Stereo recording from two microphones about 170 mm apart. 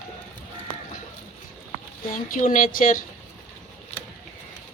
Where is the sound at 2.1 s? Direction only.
50° left (ahead or behind).